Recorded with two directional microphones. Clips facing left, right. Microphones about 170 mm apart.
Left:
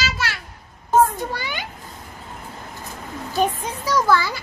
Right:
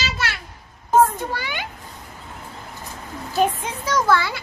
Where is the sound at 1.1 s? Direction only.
Centre (ahead or behind).